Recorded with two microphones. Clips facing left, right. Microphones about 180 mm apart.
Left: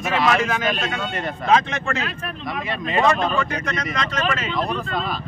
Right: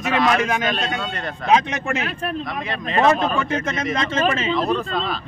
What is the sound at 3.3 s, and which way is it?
Speech, 25° right (ahead or behind).